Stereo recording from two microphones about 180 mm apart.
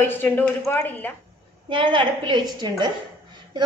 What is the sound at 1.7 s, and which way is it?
Dishes, 25° right (ahead or behind).